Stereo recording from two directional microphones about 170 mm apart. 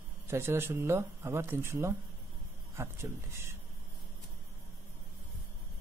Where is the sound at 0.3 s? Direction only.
15° right (ahead or behind).